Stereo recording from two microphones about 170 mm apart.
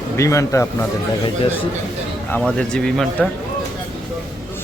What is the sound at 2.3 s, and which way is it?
Speech, 5° left (ahead or behind).